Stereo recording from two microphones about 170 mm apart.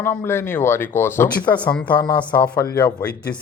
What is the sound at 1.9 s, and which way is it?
Speech, 25° left (ahead or behind).